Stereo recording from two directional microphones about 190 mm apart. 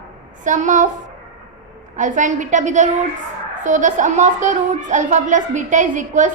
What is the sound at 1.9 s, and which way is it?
A woman's voice, 40° right (ahead or behind).